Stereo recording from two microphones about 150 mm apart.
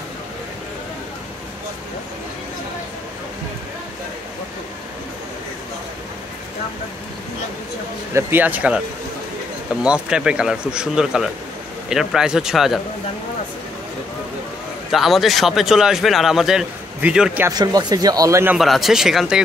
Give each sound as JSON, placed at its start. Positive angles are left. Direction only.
{"t": 8.1, "sound": "speech", "side_deg": -15}
{"t": 9.8, "sound": "speech", "side_deg": -5}
{"t": 14.9, "sound": "speech", "side_deg": 0}
{"t": 17.5, "sound": "speech", "side_deg": -25}
{"t": 18.6, "sound": "speech", "side_deg": 0}